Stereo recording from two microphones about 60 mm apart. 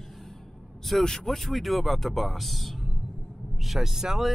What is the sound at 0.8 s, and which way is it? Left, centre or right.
Speech, centre.